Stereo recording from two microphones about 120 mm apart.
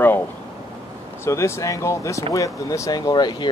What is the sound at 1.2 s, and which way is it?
Speech, 25° left (ahead or behind).